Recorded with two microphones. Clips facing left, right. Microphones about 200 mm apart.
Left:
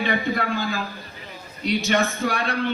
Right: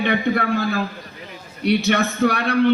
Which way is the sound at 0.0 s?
60° right (ahead or behind).